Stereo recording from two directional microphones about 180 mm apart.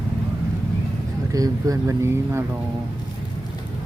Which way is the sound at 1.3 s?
20° right (ahead or behind).